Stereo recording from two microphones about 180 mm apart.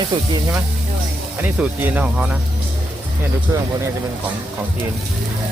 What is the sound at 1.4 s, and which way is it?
Speech, 10° right (ahead or behind).